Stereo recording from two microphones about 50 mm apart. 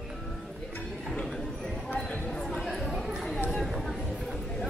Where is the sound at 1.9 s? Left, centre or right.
Centre.